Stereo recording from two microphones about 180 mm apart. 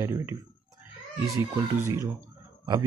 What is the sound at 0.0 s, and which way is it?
Speech, 15° right (ahead or behind).